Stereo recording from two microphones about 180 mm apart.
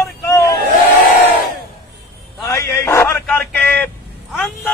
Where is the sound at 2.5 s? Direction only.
15° left (ahead or behind).